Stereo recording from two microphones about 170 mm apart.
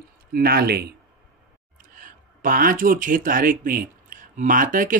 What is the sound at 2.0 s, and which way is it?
Speech, 55° right (ahead or behind).